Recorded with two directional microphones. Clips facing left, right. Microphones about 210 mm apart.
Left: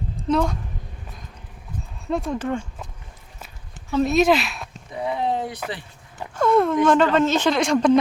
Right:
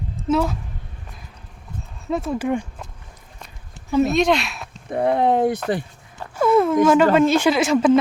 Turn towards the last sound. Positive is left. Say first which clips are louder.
# right 2 dB
turn(degrees=-5)  # may be behind; listen again after turning